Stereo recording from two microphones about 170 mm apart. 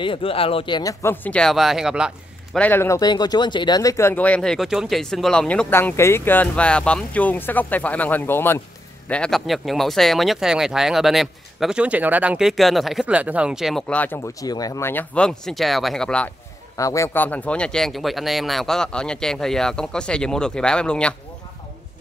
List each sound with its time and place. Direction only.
0.0 s speech: 30° left (ahead or behind)
1.0 s speech: 10° left (ahead or behind); by 2.6 s 5° right (ahead or behind)
2.6 s speech: 15° left (ahead or behind)
16.7 s speech: 20° left (ahead or behind)